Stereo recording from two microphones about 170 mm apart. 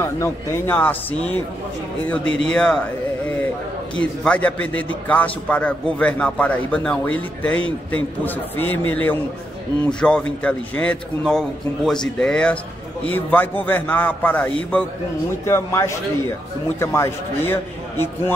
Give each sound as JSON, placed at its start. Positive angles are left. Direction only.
{"t": 0.0, "sound": "a man's voice", "side_deg": 15}
{"t": 3.9, "sound": "a man's voice", "side_deg": 5}
{"t": 8.5, "sound": "a man's voice", "side_deg": 10}